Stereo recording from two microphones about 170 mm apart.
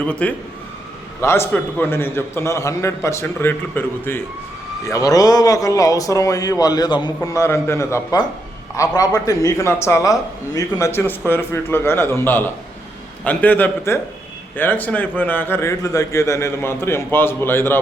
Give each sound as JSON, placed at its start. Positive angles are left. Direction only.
{"t": 0.0, "sound": "a man's voice", "side_deg": 5}